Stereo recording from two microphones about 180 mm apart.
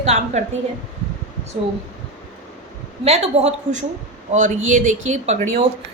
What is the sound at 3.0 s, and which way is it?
A woman's voice, 35° right (ahead or behind).